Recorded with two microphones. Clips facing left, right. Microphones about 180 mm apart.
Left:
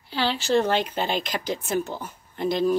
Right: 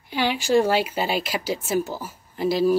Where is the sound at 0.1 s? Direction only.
10° right (ahead or behind).